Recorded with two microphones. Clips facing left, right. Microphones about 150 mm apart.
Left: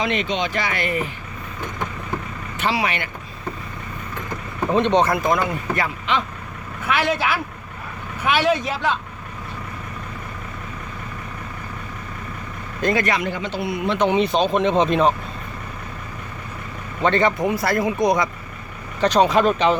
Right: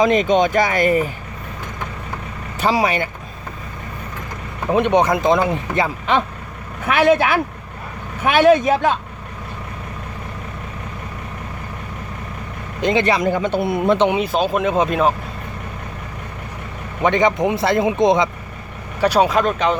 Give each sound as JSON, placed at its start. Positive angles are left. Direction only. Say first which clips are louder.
{"t": 0.0, "sound": "speech", "louder": "right 8 dB", "side_deg": -40}
{"t": 2.6, "sound": "speech", "louder": "right 5 dB", "side_deg": -40}
{"t": 4.7, "sound": "speech", "louder": "right 2 dB", "side_deg": -10}
{"t": 6.8, "sound": "speech", "louder": "right 6 dB", "side_deg": -50}
{"t": 12.8, "sound": "speech", "louder": "right 3 dB", "side_deg": -20}
{"t": 13.1, "sound": "speech", "louder": "right 6 dB", "side_deg": -45}
{"t": 14.1, "sound": "speech", "louder": "even", "side_deg": -5}
{"t": 17.0, "sound": "speech", "louder": "right 2 dB", "side_deg": -15}
{"t": 18.9, "sound": "speech", "louder": "right 1 dB", "side_deg": -10}